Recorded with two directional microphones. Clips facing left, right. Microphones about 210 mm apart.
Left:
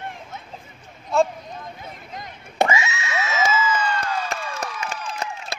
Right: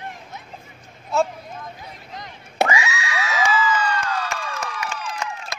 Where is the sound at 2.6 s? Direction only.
25° left (ahead or behind).